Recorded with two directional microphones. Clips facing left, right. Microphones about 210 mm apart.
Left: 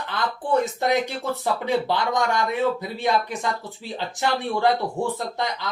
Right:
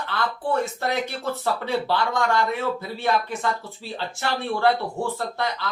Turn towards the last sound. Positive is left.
turn(degrees=15)  # may be behind; listen again after turning